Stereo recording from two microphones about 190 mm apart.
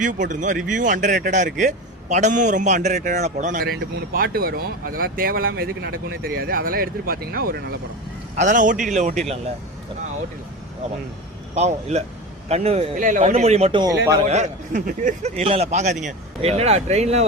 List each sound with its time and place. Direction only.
0.0 s speech: 40° right (ahead or behind)
8.4 s a man's voice: 40° right (ahead or behind)
11.5 s a man's voice: 35° right (ahead or behind)
13.8 s speech: 20° right (ahead or behind)
14.3 s a man's voice: 35° right (ahead or behind)